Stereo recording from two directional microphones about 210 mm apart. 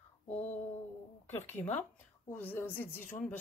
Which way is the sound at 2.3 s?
10° left (ahead or behind).